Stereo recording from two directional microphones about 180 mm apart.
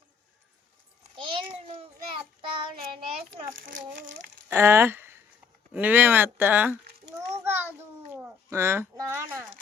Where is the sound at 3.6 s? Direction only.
50° right (ahead or behind).